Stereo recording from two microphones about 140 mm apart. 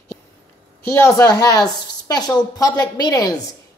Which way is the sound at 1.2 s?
25° left (ahead or behind).